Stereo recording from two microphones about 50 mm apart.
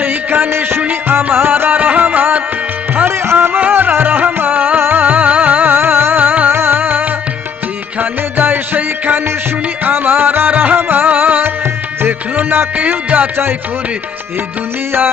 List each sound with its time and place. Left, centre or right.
0.0 s a sound: right
0.6 s music: right
5.0 s music: right
5.8 s music: right
6.2 s music: right
6.5 s music: right
6.8 s music: right
11.4 s music: right
12.7 s music: right